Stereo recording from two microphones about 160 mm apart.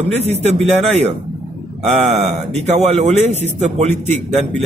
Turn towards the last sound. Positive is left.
turn(degrees=-45)  # may be behind; listen again after turning